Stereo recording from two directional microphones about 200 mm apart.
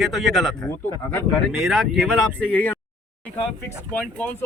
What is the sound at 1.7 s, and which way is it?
Speech, centre (ahead or behind).